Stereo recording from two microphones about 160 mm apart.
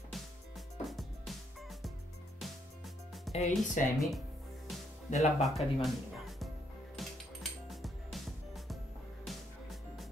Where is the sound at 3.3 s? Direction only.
45° left (ahead or behind).